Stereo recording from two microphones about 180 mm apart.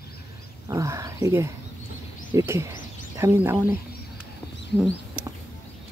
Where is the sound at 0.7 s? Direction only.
15° right (ahead or behind).